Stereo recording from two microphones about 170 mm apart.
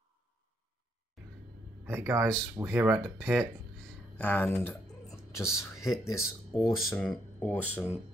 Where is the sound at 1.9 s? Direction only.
15° right (ahead or behind).